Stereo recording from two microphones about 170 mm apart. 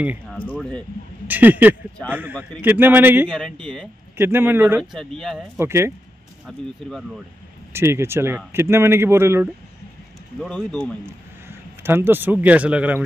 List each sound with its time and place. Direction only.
0.0 s speech: 10° right (ahead or behind)
0.6 s speech: 5° left (ahead or behind)
1.2 s speech: 10° right (ahead or behind)
3.3 s speech: 5° left (ahead or behind)
4.2 s speech: 15° right (ahead or behind)
4.9 s speech: centre (ahead or behind)
5.6 s speech: 15° right (ahead or behind)
6.4 s speech: 5° right (ahead or behind)
7.7 s speech: 15° right (ahead or behind)
10.4 s speech: 5° left (ahead or behind)
11.1 s a man's voice: 15° right (ahead or behind)